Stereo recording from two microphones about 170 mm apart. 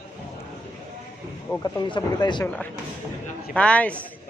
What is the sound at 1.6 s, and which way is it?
Speech, 25° left (ahead or behind).